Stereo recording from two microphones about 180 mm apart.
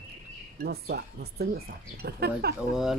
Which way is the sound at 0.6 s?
65° right (ahead or behind).